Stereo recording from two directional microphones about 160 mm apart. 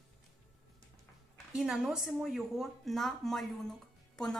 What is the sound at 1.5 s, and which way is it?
A woman's voice, 5° right (ahead or behind).